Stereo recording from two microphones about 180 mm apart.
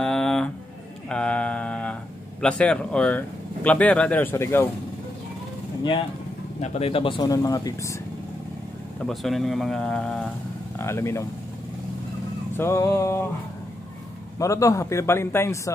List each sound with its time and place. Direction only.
0.0 s a sound: centre (ahead or behind)
2.4 s speech: 5° left (ahead or behind)
6.6 s speech: 35° left (ahead or behind); by 7.9 s 20° left (ahead or behind)
9.0 s speech: centre (ahead or behind)
10.8 s speech: 15° left (ahead or behind)
12.5 s speech: 15° left (ahead or behind)
14.4 s speech: 15° left (ahead or behind)